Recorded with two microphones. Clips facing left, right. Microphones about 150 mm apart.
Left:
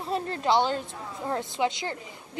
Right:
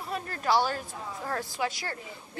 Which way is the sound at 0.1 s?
25° left (ahead or behind).